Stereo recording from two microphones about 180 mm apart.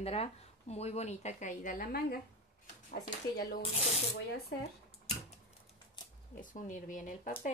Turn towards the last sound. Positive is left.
turn(degrees=45)  # may be behind; listen again after turning